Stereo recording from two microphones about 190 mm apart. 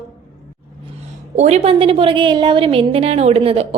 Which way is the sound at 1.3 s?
35° right (ahead or behind).